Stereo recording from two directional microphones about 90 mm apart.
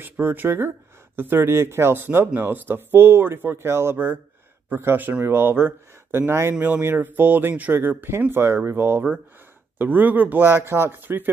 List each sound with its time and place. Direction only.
0.0 s speech: 20° right (ahead or behind)